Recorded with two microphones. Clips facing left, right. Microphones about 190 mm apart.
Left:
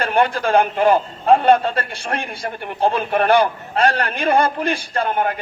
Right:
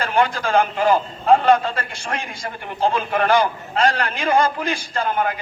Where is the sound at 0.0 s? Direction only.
55° left (ahead or behind).